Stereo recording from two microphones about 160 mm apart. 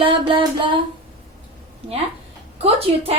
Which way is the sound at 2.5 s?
40° right (ahead or behind).